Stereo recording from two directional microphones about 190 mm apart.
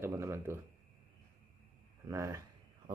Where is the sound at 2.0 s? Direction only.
15° right (ahead or behind).